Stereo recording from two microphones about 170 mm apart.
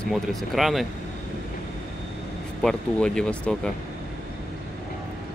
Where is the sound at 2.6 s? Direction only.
5° left (ahead or behind).